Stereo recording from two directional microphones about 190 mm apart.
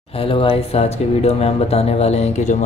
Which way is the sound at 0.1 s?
30° left (ahead or behind).